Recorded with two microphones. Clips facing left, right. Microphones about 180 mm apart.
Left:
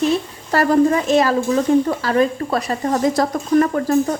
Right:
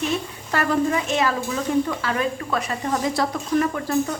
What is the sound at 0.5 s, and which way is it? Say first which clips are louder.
Speech: left 7 dB; 40° left (ahead or behind).